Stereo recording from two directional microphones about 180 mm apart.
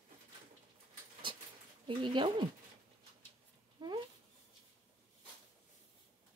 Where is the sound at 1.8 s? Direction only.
25° right (ahead or behind).